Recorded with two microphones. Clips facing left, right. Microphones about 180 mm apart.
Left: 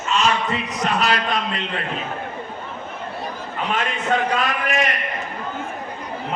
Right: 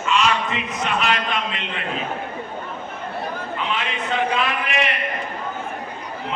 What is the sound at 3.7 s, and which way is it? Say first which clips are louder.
A man's voice: left 5 dB; 45° left (ahead or behind).